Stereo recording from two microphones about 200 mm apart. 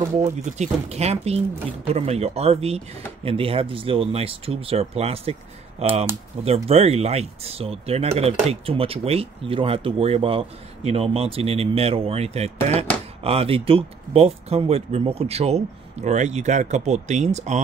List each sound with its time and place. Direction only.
0.2 s speech: 35° right (ahead or behind)